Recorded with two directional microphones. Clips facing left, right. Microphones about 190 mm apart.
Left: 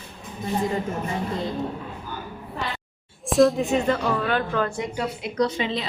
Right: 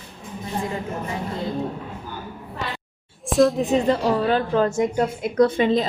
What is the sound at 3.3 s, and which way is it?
Speech, centre (ahead or behind).